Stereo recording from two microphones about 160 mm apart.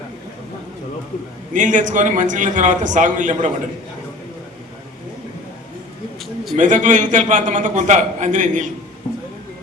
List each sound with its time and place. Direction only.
1.5 s a man's voice: 50° right (ahead or behind)
6.1 s a sound: centre (ahead or behind)
6.6 s a man's voice: 50° right (ahead or behind)